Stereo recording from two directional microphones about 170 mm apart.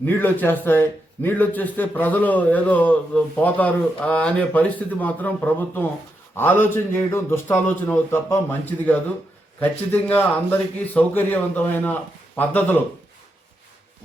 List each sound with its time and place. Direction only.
0.0 s a man's voice: 10° left (ahead or behind)